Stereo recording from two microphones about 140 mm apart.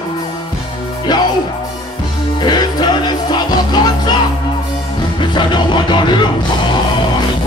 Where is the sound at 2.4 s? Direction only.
30° left (ahead or behind).